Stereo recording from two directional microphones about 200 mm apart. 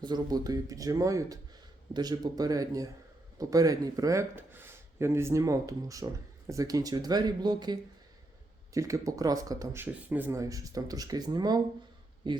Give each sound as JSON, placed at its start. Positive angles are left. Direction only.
{"t": 0.0, "sound": "speech", "side_deg": -20}